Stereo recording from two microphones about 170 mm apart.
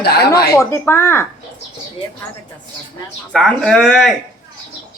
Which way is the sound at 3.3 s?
Centre (ahead or behind).